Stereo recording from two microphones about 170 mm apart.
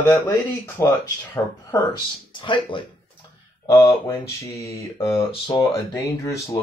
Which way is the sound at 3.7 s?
20° left (ahead or behind).